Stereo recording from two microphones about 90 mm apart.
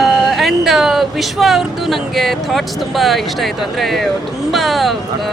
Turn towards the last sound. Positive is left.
turn(degrees=0)  # may be behind; listen again after turning